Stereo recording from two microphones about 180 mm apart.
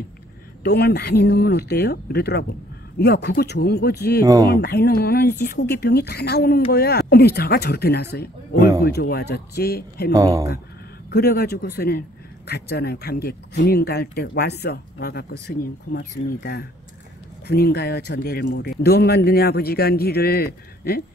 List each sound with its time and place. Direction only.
0.7 s speech: 65° left (ahead or behind)
4.2 s speech: 20° right (ahead or behind)
4.5 s speech: 60° left (ahead or behind)
10.1 s speech: 20° right (ahead or behind)
11.1 s speech: 60° left (ahead or behind)